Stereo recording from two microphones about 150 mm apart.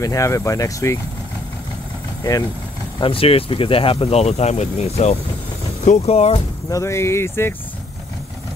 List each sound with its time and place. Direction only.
0.0 s speech: 20° left (ahead or behind)
3.0 s speech: 40° left (ahead or behind)
6.7 s speech: 20° left (ahead or behind)